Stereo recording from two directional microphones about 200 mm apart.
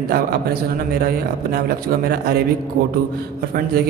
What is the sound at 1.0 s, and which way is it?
A man's voice, 50° right (ahead or behind).